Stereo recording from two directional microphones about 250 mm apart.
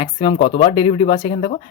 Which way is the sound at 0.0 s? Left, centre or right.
Left.